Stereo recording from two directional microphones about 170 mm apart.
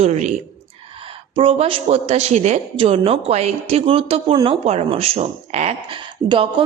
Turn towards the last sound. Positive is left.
turn(degrees=-30)  # may be behind; listen again after turning